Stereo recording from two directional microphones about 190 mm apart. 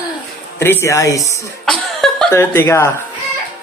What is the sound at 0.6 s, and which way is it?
Speech, 10° left (ahead or behind).